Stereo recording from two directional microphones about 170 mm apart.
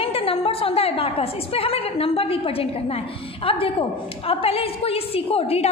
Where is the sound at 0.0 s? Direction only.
35° left (ahead or behind).